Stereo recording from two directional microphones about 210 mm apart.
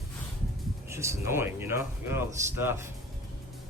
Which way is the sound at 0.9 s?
15° right (ahead or behind).